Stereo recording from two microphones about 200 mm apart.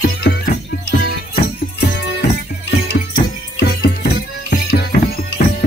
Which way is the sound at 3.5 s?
55° left (ahead or behind).